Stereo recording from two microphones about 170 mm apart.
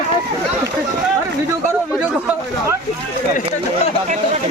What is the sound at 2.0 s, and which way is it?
Speech, 10° right (ahead or behind).